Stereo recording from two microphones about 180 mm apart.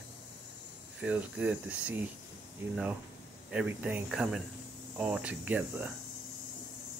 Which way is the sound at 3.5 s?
5° right (ahead or behind).